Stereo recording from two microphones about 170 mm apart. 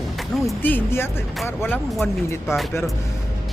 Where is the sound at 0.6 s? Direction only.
10° left (ahead or behind).